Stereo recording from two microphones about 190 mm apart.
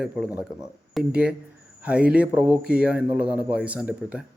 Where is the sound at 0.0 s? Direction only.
5° right (ahead or behind).